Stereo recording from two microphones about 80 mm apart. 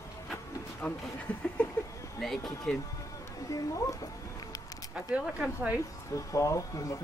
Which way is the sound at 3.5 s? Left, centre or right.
Left.